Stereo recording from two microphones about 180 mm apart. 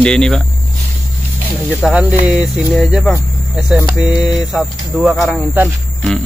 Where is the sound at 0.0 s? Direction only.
5° left (ahead or behind).